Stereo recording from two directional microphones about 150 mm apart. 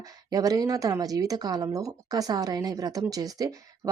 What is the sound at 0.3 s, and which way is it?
Speech, 25° right (ahead or behind).